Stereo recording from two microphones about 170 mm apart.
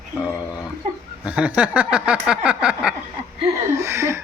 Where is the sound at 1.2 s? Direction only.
5° right (ahead or behind).